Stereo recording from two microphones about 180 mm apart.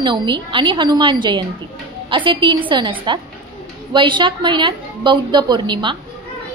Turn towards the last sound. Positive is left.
turn(degrees=-25)  # may be behind; listen again after turning